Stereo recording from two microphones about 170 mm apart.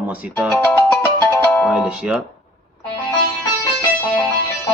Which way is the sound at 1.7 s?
5° right (ahead or behind).